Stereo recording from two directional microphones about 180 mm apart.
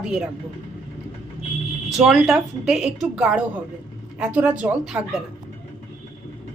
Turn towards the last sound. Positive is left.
turn(degrees=-5)  # may be behind; listen again after turning